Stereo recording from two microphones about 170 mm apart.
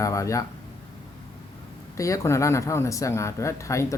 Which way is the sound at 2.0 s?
20° left (ahead or behind).